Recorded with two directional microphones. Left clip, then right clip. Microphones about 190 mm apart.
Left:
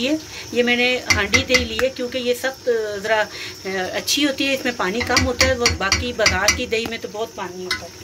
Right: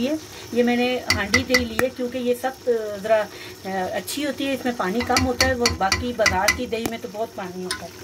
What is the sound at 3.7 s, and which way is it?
Speech, 10° right (ahead or behind).